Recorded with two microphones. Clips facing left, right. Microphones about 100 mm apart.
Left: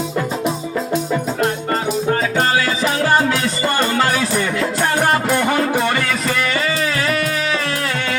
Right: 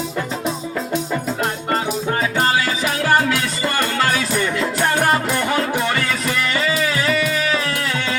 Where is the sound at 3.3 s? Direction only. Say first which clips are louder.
Left 2 dB; 20° left (ahead or behind).